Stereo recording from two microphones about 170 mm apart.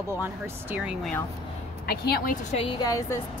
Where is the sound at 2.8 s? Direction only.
20° left (ahead or behind).